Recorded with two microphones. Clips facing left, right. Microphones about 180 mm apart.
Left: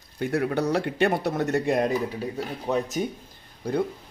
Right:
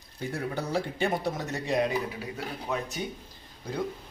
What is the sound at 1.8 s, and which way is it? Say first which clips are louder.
Speech: left 4 dB; 35° left (ahead or behind).